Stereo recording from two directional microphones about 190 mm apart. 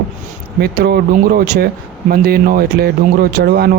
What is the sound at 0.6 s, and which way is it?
Speech, 55° right (ahead or behind).